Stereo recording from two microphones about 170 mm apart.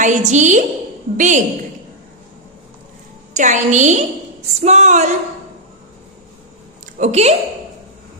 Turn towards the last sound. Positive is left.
turn(degrees=-40)  # may be behind; listen again after turning